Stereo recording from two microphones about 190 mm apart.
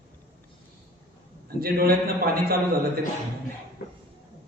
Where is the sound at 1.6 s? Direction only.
55° right (ahead or behind).